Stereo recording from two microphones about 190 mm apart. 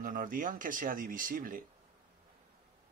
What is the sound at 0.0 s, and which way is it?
Speech, 45° right (ahead or behind).